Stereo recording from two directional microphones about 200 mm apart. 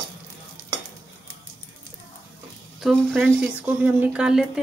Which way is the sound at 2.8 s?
Centre (ahead or behind).